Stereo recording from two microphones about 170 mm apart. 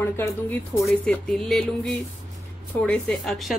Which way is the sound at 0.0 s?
15° left (ahead or behind).